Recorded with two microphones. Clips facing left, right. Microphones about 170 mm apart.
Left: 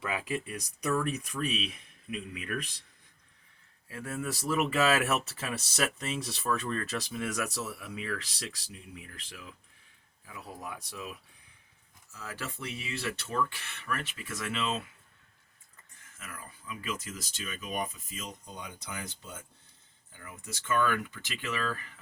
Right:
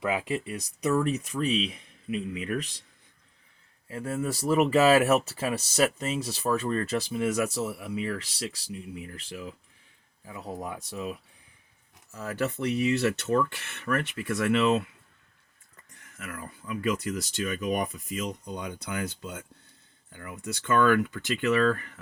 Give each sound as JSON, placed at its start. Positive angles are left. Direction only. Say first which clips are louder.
{"t": 0.0, "sound": "speech", "louder": "right 5 dB", "side_deg": -25}
{"t": 3.8, "sound": "speech", "louder": "right 6 dB", "side_deg": -30}
{"t": 12.1, "sound": "speech", "louder": "right 11 dB", "side_deg": -60}
{"t": 13.8, "sound": "speech", "louder": "right 8 dB", "side_deg": -60}
{"t": 16.1, "sound": "speech", "louder": "right 7 dB", "side_deg": -60}